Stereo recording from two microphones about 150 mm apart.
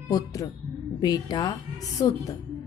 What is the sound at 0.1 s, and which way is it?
A woman's voice, 25° left (ahead or behind).